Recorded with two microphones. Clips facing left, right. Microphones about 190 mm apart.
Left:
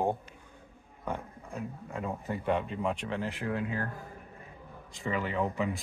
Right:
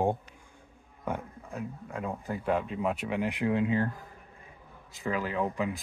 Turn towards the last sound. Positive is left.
turn(degrees=0)  # may be behind; listen again after turning